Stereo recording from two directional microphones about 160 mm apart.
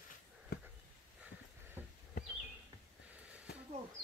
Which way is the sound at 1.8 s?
10° right (ahead or behind).